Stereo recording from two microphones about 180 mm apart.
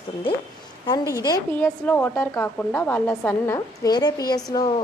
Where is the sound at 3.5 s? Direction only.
20° left (ahead or behind).